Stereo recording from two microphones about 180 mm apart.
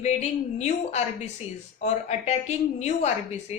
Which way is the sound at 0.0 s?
40° left (ahead or behind).